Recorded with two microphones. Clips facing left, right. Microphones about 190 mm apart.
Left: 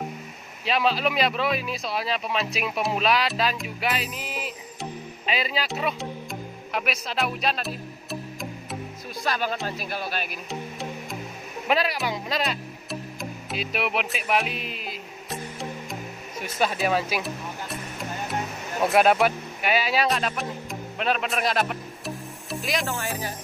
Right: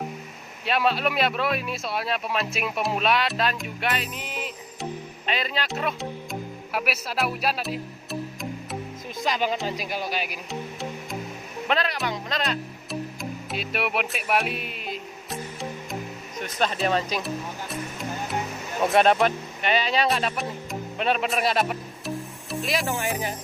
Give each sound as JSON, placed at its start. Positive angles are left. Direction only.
{"t": 0.7, "sound": "speech", "side_deg": 0}
{"t": 6.7, "sound": "music", "side_deg": -5}
{"t": 9.2, "sound": "speech", "side_deg": -15}
{"t": 10.5, "sound": "music", "side_deg": 0}
{"t": 11.6, "sound": "speech", "side_deg": 10}
{"t": 13.2, "sound": "music", "side_deg": 0}
{"t": 18.8, "sound": "speech", "side_deg": 5}
{"t": 22.8, "sound": "speech", "side_deg": -15}